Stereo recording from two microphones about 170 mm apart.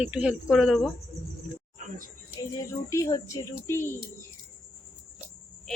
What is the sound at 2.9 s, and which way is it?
Speech, 20° left (ahead or behind).